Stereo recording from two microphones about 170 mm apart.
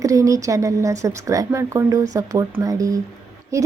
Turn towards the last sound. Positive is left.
turn(degrees=-20)  # may be behind; listen again after turning